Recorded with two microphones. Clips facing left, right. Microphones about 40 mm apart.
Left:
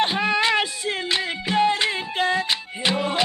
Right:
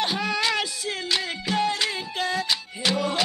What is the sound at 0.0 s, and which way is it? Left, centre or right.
Child singing, left.